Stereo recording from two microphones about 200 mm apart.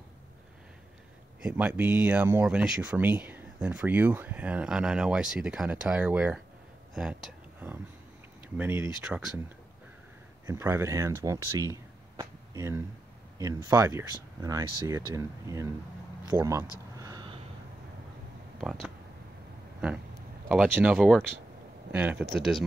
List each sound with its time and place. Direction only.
1.4 s speech: 5° right (ahead or behind)
10.4 s speech: 15° right (ahead or behind)
17.0 s a sound: 20° right (ahead or behind)
18.6 s speech: centre (ahead or behind)
20.4 s speech: 5° right (ahead or behind)